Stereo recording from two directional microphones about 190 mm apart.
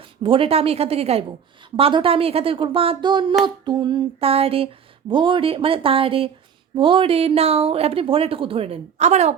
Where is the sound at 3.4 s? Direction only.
25° right (ahead or behind).